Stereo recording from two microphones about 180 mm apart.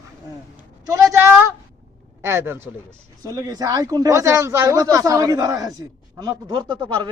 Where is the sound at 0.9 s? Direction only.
15° right (ahead or behind).